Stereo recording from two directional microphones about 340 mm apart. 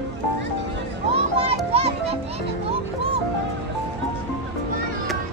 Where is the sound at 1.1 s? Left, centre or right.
Centre.